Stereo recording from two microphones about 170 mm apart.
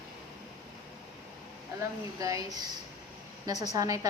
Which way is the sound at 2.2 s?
20° right (ahead or behind).